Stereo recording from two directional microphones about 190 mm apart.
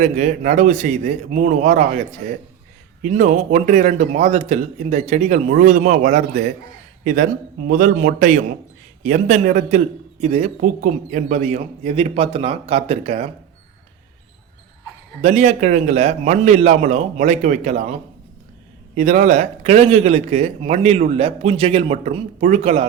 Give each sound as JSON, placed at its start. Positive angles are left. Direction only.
{"t": 0.0, "sound": "a man's voice", "side_deg": -40}
{"t": 3.0, "sound": "a man's voice", "side_deg": -40}
{"t": 15.2, "sound": "a man's voice", "side_deg": -35}
{"t": 18.9, "sound": "a man's voice", "side_deg": -40}